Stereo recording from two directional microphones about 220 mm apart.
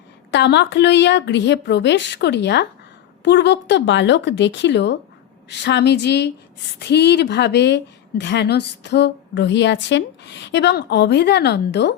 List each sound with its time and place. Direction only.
0.3 s speech: 55° left (ahead or behind)